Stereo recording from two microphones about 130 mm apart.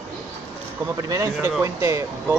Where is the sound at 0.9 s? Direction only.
25° right (ahead or behind).